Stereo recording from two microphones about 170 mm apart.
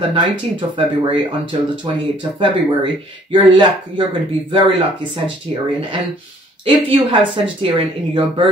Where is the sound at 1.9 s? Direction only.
30° right (ahead or behind).